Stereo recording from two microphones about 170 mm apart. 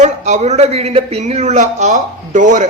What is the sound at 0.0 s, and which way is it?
A man's voice, 45° right (ahead or behind).